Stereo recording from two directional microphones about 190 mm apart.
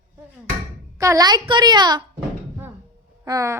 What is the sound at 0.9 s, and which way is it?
A woman's voice, 15° right (ahead or behind).